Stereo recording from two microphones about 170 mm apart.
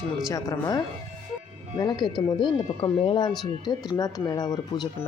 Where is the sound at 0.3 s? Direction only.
20° left (ahead or behind).